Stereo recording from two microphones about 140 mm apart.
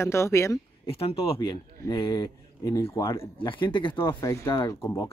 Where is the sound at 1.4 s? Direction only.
30° left (ahead or behind).